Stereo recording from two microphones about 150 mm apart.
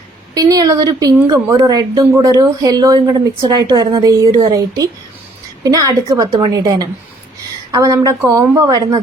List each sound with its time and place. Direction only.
0.3 s speech: 25° right (ahead or behind)